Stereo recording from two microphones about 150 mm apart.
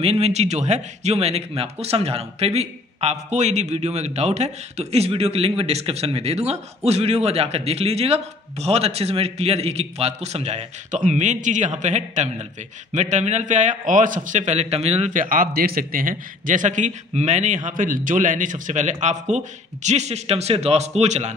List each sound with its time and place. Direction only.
0.0 s a man's voice: 45° right (ahead or behind)